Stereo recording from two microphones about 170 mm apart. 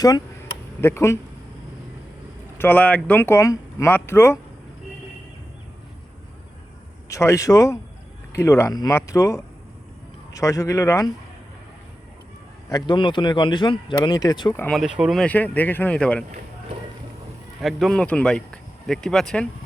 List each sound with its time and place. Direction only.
0.8 s speech: 15° left (ahead or behind)
2.6 s speech: 10° left (ahead or behind)
7.1 s speech: 15° left (ahead or behind)
12.9 s speech: 30° left (ahead or behind)
14.7 s speech: 5° right (ahead or behind)
17.6 s speech: centre (ahead or behind)